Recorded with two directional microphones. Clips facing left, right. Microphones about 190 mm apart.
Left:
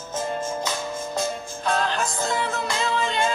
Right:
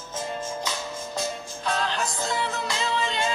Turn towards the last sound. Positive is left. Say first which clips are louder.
# left 3 dB
turn(degrees=50)  # may be behind; listen again after turning